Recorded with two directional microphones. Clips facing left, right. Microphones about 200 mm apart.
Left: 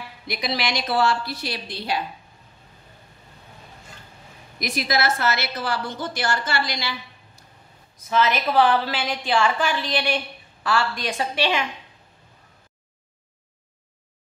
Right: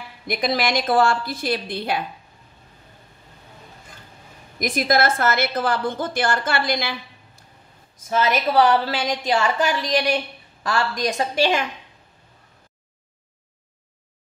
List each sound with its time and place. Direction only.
0.3 s a woman's voice: 50° right (ahead or behind)
4.6 s a woman's voice: 50° right (ahead or behind)
8.1 s a woman's voice: 40° right (ahead or behind)